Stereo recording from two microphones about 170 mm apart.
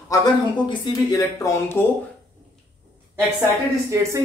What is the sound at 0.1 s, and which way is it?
Speech, 25° left (ahead or behind).